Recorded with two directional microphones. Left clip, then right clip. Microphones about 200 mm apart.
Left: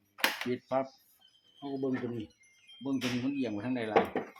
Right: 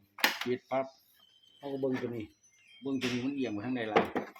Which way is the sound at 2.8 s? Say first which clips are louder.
Even; 15° left (ahead or behind).